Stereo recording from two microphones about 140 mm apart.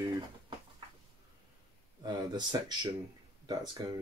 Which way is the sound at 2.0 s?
30° right (ahead or behind).